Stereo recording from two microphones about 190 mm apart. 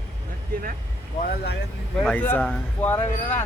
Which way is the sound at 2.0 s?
10° left (ahead or behind).